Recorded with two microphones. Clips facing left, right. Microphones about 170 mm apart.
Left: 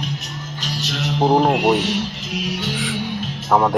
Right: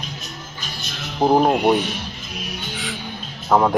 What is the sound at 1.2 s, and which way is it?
Speech, centre (ahead or behind).